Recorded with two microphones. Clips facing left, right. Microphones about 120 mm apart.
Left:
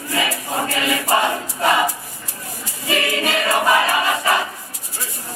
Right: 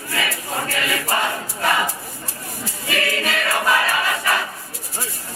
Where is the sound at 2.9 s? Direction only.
20° left (ahead or behind).